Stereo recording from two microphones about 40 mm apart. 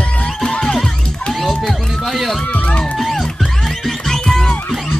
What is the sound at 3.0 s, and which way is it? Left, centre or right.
Music, centre.